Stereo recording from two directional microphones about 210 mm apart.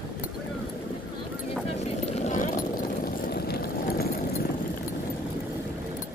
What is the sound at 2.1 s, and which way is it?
Vehicle, 35° left (ahead or behind).